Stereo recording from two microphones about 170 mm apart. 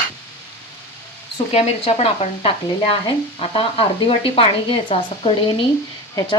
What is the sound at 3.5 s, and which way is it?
A woman's voice, 35° left (ahead or behind).